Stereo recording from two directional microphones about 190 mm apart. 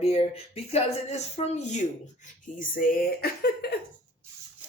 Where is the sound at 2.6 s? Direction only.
50° left (ahead or behind).